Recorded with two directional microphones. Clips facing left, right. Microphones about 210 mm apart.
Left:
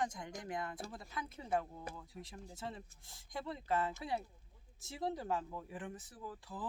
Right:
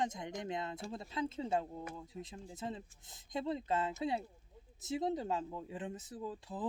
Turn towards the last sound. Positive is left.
turn(degrees=-20)  # may be behind; listen again after turning